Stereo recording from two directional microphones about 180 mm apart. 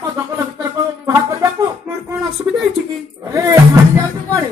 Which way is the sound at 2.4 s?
15° right (ahead or behind).